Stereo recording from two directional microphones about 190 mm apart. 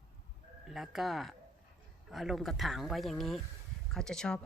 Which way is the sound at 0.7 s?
Centre (ahead or behind).